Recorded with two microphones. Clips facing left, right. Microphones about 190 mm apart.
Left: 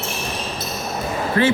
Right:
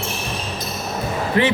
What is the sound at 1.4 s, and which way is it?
Speech, 20° right (ahead or behind).